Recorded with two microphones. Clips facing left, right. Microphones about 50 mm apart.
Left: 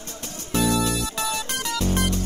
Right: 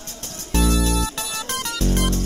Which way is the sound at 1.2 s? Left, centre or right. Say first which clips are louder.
Left 1 dB; left.